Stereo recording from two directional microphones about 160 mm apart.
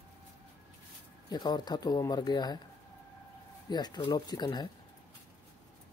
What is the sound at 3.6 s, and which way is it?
Speech, 25° left (ahead or behind).